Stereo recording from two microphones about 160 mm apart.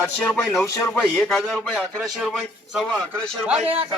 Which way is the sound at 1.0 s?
Centre (ahead or behind).